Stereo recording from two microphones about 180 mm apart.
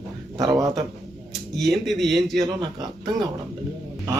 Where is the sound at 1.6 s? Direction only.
Centre (ahead or behind).